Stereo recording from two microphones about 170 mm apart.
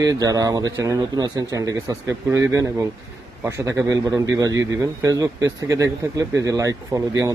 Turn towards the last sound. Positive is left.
turn(degrees=-20)  # may be behind; listen again after turning